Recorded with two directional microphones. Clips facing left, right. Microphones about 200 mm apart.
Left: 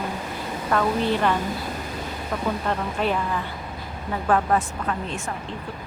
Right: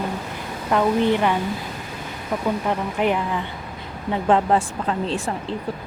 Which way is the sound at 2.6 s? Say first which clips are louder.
Right 3 dB; 15° right (ahead or behind).